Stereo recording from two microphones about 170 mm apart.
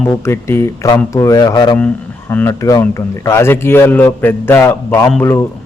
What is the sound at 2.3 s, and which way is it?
A man's voice, 15° left (ahead or behind).